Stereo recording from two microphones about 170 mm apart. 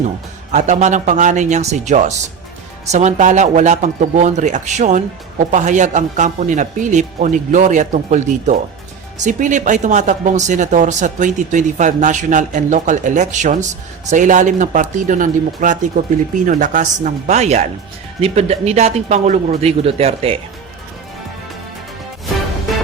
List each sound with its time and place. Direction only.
0.5 s speech: 45° right (ahead or behind)